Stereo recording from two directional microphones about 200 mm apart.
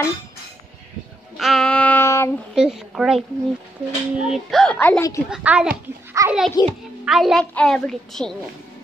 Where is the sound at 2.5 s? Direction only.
Centre (ahead or behind).